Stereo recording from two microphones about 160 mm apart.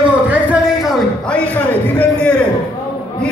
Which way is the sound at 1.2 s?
10° left (ahead or behind).